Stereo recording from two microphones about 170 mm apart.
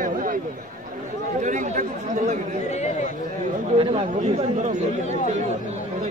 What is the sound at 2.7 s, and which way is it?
Speech, 40° left (ahead or behind).